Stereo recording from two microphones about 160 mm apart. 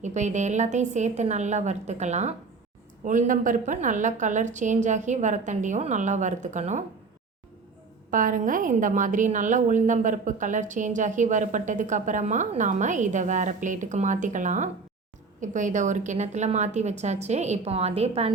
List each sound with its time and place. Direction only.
0.0 s a woman's voice: 45° right (ahead or behind)
8.1 s a woman's voice: 55° right (ahead or behind); by 18.3 s 40° right (ahead or behind)